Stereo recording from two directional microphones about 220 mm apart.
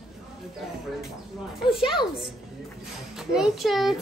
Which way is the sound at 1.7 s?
25° left (ahead or behind).